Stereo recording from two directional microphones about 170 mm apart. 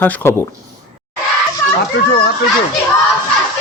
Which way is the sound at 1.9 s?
65° left (ahead or behind).